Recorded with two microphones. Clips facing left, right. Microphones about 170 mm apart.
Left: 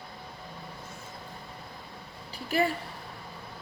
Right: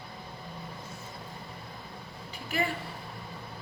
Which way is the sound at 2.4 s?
35° left (ahead or behind).